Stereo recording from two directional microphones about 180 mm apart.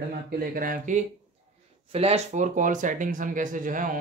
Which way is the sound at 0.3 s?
50° right (ahead or behind).